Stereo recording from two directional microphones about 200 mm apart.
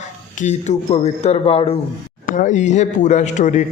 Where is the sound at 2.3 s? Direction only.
40° left (ahead or behind).